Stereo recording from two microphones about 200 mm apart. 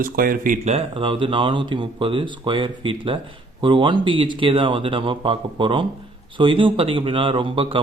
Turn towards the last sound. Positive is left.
turn(degrees=-25)  # may be behind; listen again after turning